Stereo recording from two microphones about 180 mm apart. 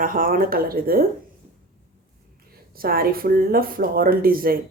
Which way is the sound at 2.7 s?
55° right (ahead or behind).